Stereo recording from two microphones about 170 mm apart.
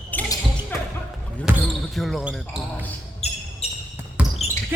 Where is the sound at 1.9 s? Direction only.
Centre (ahead or behind).